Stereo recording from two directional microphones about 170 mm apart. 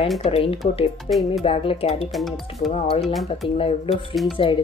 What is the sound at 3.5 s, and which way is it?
Speech, 35° left (ahead or behind).